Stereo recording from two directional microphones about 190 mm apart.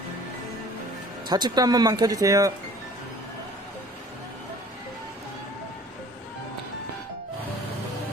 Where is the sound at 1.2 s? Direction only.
20° right (ahead or behind).